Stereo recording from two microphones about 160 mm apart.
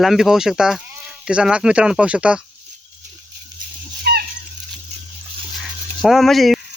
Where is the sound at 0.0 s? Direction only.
Centre (ahead or behind).